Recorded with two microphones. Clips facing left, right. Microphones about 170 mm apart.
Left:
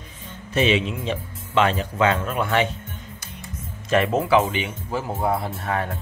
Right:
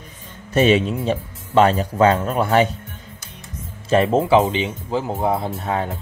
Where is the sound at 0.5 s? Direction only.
45° right (ahead or behind).